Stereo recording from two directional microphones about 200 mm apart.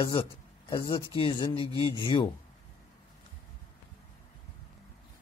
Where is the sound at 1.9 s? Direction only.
25° left (ahead or behind).